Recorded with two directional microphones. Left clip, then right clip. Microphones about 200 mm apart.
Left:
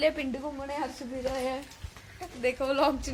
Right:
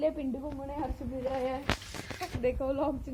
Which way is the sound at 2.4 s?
15° right (ahead or behind).